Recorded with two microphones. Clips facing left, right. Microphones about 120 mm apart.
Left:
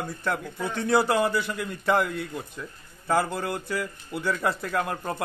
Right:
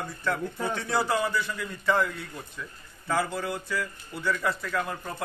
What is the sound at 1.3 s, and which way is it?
A man's voice, 60° left (ahead or behind).